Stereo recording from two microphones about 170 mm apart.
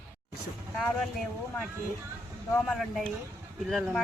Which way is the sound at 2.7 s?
Centre (ahead or behind).